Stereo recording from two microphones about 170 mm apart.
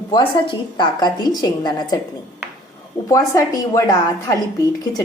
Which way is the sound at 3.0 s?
20° left (ahead or behind).